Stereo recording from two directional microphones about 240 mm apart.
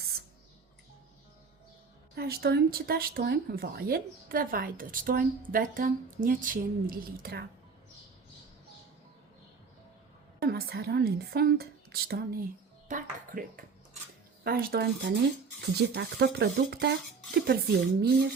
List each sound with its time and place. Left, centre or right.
2.1 s speech: right
10.4 s speech: right